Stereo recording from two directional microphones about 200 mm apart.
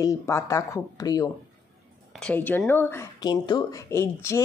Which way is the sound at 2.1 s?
5° left (ahead or behind).